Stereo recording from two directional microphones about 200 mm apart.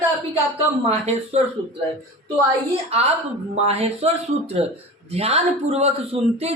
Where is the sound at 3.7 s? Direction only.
30° right (ahead or behind).